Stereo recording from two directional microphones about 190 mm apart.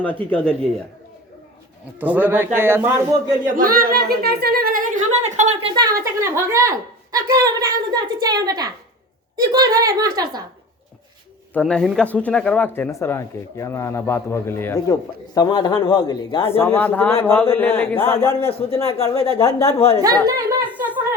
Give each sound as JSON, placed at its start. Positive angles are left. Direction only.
{"t": 0.0, "sound": "speech", "side_deg": 10}
{"t": 2.0, "sound": "speech", "side_deg": -10}
{"t": 3.4, "sound": "speech", "side_deg": -45}
{"t": 5.7, "sound": "a woman's voice", "side_deg": -20}
{"t": 11.5, "sound": "speech", "side_deg": 5}
{"t": 18.9, "sound": "speech", "side_deg": 30}
{"t": 20.2, "sound": "speech", "side_deg": -15}